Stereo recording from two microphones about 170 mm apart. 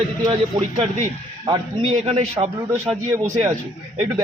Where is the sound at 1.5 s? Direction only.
30° right (ahead or behind).